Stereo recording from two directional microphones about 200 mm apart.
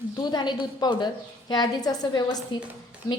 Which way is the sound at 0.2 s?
20° left (ahead or behind).